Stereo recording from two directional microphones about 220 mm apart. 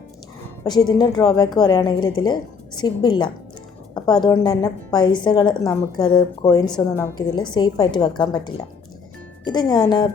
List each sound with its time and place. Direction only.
0.6 s a woman's voice: 20° left (ahead or behind)